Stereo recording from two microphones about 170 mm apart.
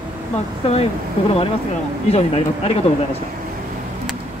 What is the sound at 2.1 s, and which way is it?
Speech, 35° left (ahead or behind).